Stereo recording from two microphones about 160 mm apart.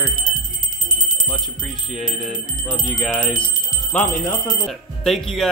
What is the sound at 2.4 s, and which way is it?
Speech, 55° left (ahead or behind).